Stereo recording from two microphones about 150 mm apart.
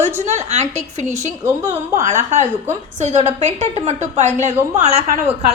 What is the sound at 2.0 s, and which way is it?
A woman's voice, 50° right (ahead or behind).